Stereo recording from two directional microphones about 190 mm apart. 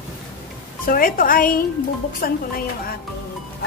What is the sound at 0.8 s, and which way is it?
A woman's voice, 50° left (ahead or behind).